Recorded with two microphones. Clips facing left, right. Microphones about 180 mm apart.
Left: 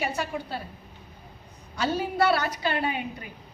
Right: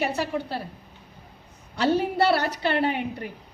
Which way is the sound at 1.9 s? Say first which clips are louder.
Right 1 dB; 60° right (ahead or behind).